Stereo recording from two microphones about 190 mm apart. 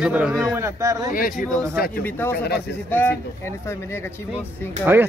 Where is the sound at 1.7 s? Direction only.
50° left (ahead or behind).